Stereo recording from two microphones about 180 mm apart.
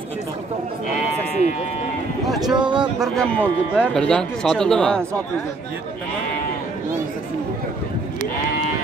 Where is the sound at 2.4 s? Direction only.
25° right (ahead or behind).